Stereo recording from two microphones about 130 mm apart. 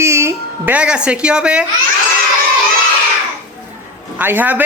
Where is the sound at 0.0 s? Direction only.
20° right (ahead or behind).